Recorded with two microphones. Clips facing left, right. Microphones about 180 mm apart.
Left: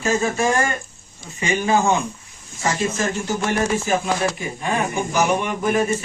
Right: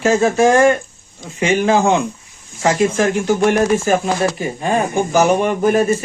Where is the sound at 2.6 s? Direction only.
65° right (ahead or behind).